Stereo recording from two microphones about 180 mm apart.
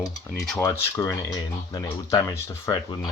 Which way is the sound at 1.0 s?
15° left (ahead or behind).